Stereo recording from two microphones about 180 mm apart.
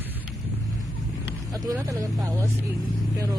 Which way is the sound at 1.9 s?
20° right (ahead or behind).